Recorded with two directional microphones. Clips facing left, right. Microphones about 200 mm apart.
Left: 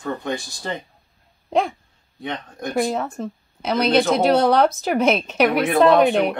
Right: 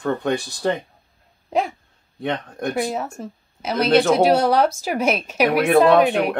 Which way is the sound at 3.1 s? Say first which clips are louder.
Left 4 dB; 5° right (ahead or behind).